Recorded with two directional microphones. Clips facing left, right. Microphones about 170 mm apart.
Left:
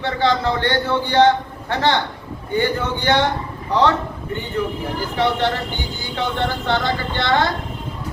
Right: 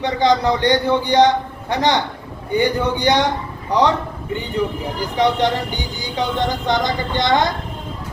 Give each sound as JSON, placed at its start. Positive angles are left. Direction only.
{"t": 0.0, "sound": "speech", "side_deg": -15}
{"t": 5.1, "sound": "speech", "side_deg": -15}